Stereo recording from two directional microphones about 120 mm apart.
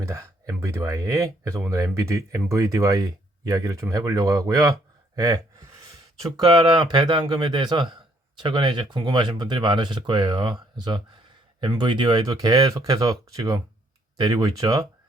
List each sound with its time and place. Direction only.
0.0 s speech: 25° right (ahead or behind)